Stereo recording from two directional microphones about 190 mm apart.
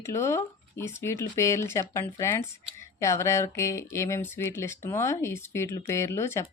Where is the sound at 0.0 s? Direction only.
15° left (ahead or behind).